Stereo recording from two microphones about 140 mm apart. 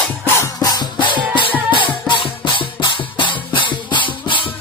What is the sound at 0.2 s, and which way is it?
Music, 25° left (ahead or behind).